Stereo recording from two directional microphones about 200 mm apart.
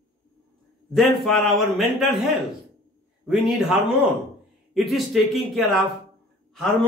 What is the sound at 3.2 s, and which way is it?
Speech, 5° right (ahead or behind).